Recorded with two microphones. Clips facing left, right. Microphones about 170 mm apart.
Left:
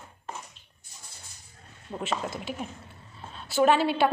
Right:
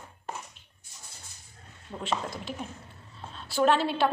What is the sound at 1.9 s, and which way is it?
Speech, 25° left (ahead or behind).